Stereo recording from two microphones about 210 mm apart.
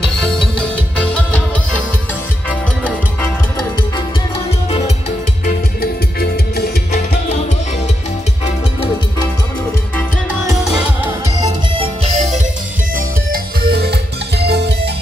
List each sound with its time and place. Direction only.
0.0 s music: centre (ahead or behind)
2.8 s music: 10° left (ahead or behind)
4.6 s music: 30° left (ahead or behind)
5.4 s music: 45° left (ahead or behind)
9.9 s music: centre (ahead or behind)
11.1 s music: 20° right (ahead or behind)
12.9 s music: 45° right (ahead or behind)